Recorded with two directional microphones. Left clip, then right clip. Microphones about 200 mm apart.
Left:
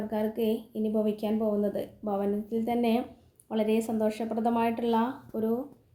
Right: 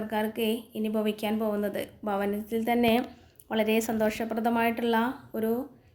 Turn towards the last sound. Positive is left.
turn(degrees=0)  # may be behind; listen again after turning